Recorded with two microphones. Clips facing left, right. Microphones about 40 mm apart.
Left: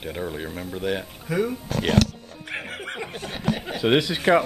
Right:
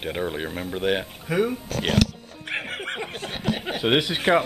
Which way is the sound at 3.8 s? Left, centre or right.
Right.